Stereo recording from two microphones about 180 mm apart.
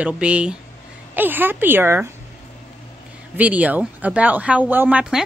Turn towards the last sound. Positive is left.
turn(degrees=-5)  # may be behind; listen again after turning